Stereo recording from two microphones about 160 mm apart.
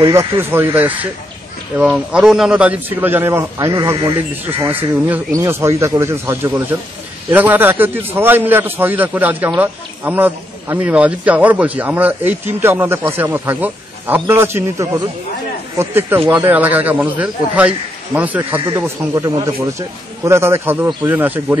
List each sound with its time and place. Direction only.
0.0 s speech: 20° right (ahead or behind)